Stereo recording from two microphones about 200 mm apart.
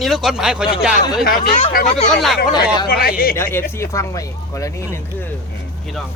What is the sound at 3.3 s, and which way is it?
Speech, 10° left (ahead or behind).